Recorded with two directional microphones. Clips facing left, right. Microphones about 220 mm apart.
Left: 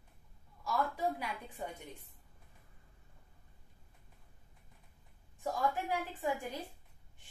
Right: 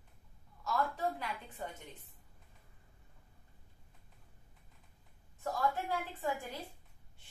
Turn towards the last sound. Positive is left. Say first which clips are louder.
# left 2 dB
turn(degrees=15)  # may be behind; listen again after turning